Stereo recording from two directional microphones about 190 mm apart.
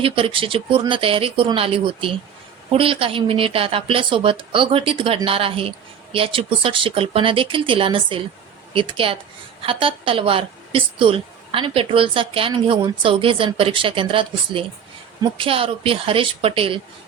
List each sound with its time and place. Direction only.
0.0 s speech: 30° right (ahead or behind)